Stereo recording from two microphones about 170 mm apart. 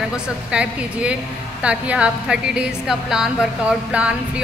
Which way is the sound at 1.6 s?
5° right (ahead or behind).